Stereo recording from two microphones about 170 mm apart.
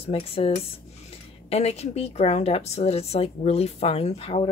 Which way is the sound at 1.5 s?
40° left (ahead or behind).